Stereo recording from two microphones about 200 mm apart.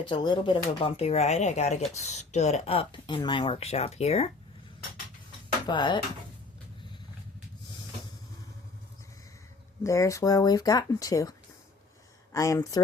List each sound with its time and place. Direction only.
0.0 s speech: 25° left (ahead or behind)
5.6 s speech: 20° left (ahead or behind)
9.8 s speech: 15° left (ahead or behind)